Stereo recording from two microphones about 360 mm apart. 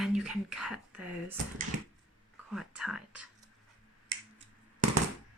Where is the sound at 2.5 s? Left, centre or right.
Centre.